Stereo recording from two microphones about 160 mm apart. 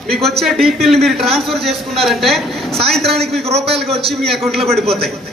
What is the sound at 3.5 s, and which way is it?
Speech, 40° right (ahead or behind).